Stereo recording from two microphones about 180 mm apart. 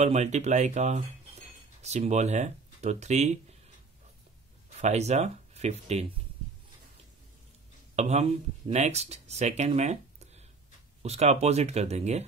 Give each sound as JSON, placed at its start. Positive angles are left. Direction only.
{"t": 0.0, "sound": "speech", "side_deg": -40}
{"t": 4.7, "sound": "speech", "side_deg": -40}
{"t": 7.9, "sound": "speech", "side_deg": -40}